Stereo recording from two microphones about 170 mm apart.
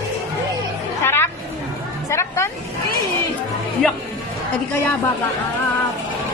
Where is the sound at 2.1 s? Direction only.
15° left (ahead or behind).